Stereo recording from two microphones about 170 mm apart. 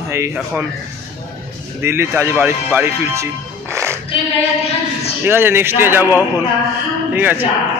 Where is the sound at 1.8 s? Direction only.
15° right (ahead or behind).